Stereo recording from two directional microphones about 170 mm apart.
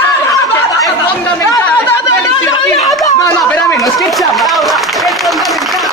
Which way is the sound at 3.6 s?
Centre (ahead or behind).